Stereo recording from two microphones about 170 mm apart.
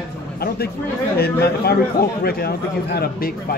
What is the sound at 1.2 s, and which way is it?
Speech, 70° left (ahead or behind).